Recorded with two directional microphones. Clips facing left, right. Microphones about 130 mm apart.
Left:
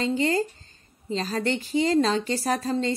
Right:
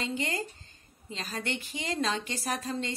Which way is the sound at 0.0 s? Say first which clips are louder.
Left 9 dB; 35° left (ahead or behind).